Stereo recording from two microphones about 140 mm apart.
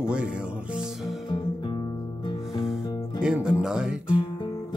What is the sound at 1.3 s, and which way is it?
Music, 30° left (ahead or behind).